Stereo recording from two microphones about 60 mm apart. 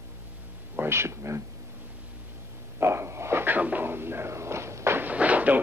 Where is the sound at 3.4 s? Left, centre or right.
Right.